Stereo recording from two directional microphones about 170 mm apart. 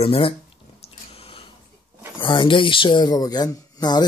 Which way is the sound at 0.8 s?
35° left (ahead or behind).